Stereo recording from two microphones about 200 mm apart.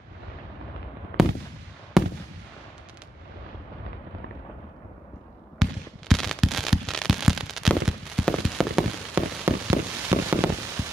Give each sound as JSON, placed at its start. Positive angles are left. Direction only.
{"t": 1.2, "sound": "gunshot", "side_deg": 0}
{"t": 2.0, "sound": "fireworks", "side_deg": 0}
{"t": 5.6, "sound": "fireworks", "side_deg": 0}
{"t": 9.4, "sound": "a sound", "side_deg": -15}